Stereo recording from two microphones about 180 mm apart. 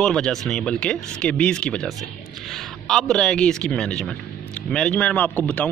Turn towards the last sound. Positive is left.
turn(degrees=10)  # may be behind; listen again after turning